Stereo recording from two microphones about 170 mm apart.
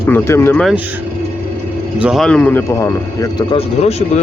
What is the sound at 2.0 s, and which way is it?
Speech, 5° right (ahead or behind).